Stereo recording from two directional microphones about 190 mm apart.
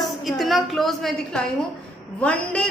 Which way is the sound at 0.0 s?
Centre (ahead or behind).